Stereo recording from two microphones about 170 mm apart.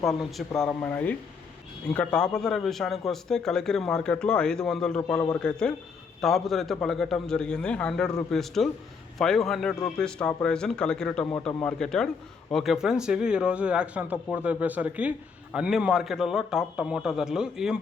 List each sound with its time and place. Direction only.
0.2 s a man's voice: centre (ahead or behind)